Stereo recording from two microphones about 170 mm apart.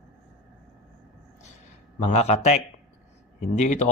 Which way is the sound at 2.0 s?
40° left (ahead or behind).